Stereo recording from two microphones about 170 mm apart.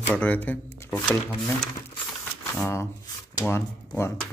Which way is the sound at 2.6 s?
15° left (ahead or behind).